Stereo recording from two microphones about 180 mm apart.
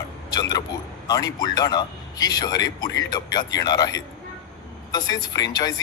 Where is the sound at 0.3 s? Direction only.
20° left (ahead or behind).